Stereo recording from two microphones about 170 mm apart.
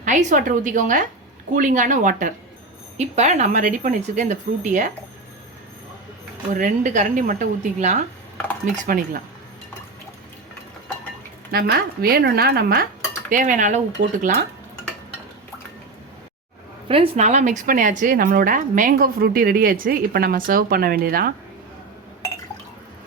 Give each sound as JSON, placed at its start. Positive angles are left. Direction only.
{"t": 0.0, "sound": "speech", "side_deg": -45}
{"t": 6.5, "sound": "speech", "side_deg": -50}
{"t": 11.5, "sound": "speech", "side_deg": -60}
{"t": 13.3, "sound": "speech", "side_deg": -50}
{"t": 16.9, "sound": "speech", "side_deg": -35}